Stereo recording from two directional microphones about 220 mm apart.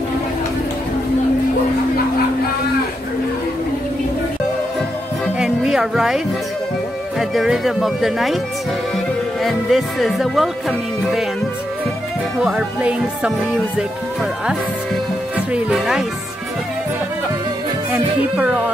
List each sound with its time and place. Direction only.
5.2 s music: centre (ahead or behind)
7.2 s speech: centre (ahead or behind)
12.4 s speech: 5° right (ahead or behind)
15.3 s music: 5° right (ahead or behind)